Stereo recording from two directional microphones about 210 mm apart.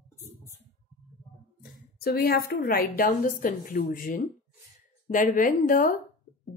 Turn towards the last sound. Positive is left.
turn(degrees=40)  # may be behind; listen again after turning